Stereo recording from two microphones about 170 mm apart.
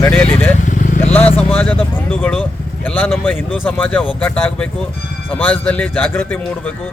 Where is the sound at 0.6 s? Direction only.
45° left (ahead or behind).